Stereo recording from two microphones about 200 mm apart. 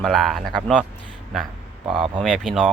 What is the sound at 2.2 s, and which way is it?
Speech, 5° left (ahead or behind).